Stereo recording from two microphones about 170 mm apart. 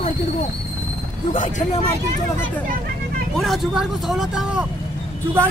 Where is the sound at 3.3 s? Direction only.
Centre (ahead or behind).